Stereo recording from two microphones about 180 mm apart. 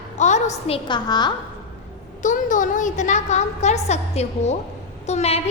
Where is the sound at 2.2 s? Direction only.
45° left (ahead or behind).